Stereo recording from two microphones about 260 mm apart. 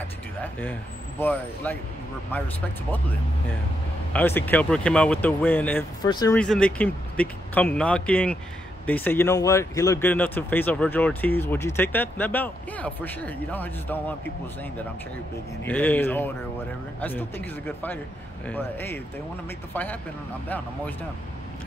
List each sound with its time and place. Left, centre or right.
1.2 s speech: centre
4.1 s speech: centre
6.4 s speech: centre